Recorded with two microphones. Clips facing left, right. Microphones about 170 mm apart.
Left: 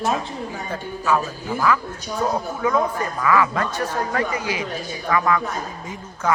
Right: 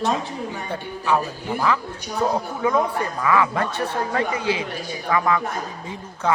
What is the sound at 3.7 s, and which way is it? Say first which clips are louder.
Speech: even; 60° right (ahead or behind).